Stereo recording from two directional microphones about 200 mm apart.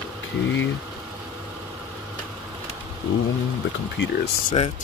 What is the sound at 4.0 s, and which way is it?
Speech, 60° left (ahead or behind).